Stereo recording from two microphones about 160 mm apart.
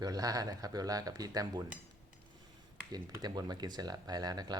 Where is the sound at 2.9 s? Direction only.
25° right (ahead or behind).